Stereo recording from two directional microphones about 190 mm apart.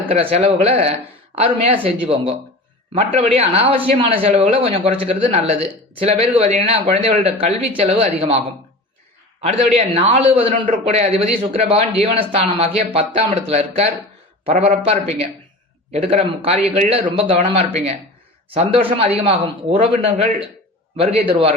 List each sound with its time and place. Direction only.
0.1 s a man's voice: 30° right (ahead or behind)
9.4 s a man's voice: 30° right (ahead or behind)